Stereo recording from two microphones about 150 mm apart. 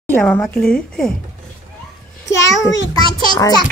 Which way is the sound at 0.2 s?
5° left (ahead or behind).